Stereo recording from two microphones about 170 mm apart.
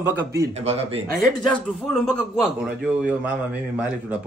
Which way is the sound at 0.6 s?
40° right (ahead or behind).